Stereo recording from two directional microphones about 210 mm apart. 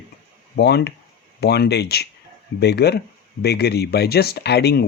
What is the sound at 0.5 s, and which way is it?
Speech, 50° left (ahead or behind).